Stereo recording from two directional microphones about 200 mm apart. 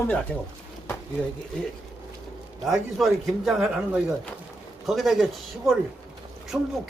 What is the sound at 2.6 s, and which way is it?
A man's voice, centre (ahead or behind).